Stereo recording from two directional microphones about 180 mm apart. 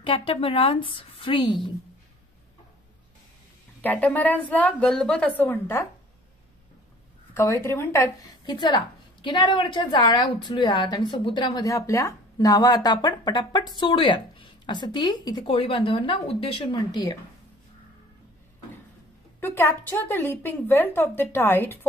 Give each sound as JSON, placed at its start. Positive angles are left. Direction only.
{"t": 0.0, "sound": "a woman's voice", "side_deg": 30}
{"t": 3.8, "sound": "a woman's voice", "side_deg": 10}
{"t": 7.3, "sound": "a woman's voice", "side_deg": 15}
{"t": 8.5, "sound": "a woman's voice", "side_deg": 25}
{"t": 19.4, "sound": "a woman's voice", "side_deg": 10}